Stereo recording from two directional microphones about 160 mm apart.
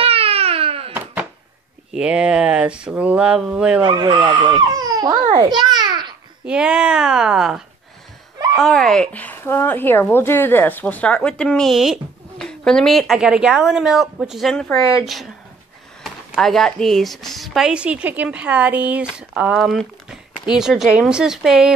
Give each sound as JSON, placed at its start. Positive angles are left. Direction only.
{"t": 0.0, "sound": "crying", "side_deg": -35}
{"t": 1.9, "sound": "speech", "side_deg": -5}
{"t": 3.8, "sound": "a child's voice", "side_deg": -30}
{"t": 6.4, "sound": "speech", "side_deg": -5}